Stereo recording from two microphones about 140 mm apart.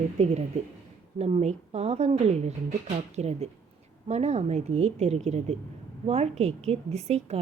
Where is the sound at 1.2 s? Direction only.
50° right (ahead or behind).